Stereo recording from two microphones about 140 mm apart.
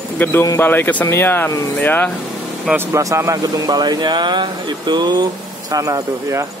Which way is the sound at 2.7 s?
20° right (ahead or behind).